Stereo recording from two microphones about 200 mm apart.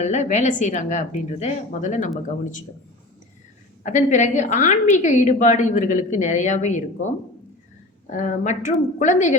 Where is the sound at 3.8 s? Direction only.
35° left (ahead or behind).